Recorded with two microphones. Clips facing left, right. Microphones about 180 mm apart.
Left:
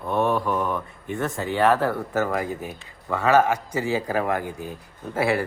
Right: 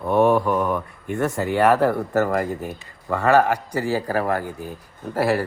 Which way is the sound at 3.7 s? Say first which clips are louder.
Right 2 dB; 15° left (ahead or behind).